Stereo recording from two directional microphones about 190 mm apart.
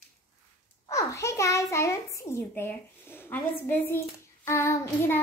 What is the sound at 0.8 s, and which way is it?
A child's voice, 15° left (ahead or behind).